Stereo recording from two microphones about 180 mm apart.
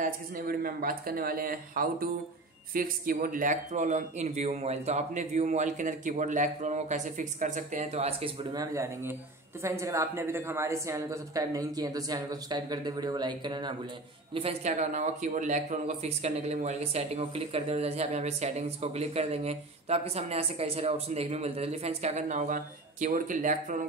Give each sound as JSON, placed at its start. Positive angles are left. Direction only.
{"t": 0.0, "sound": "speech", "side_deg": -50}
{"t": 8.5, "sound": "speech", "side_deg": -15}
{"t": 14.3, "sound": "speech", "side_deg": -35}